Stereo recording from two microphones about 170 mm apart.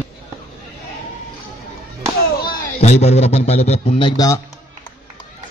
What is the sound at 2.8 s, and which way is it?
A man's voice, 40° left (ahead or behind).